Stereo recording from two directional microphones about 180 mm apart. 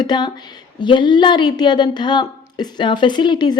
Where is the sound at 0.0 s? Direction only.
25° left (ahead or behind).